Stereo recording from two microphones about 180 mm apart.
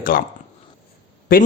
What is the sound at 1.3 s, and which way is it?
Speech, 55° left (ahead or behind).